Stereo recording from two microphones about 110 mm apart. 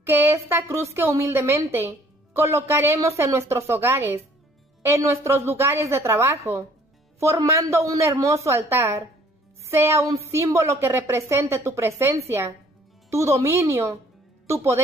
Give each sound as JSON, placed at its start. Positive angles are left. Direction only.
{"t": 0.0, "sound": "a woman's voice", "side_deg": -20}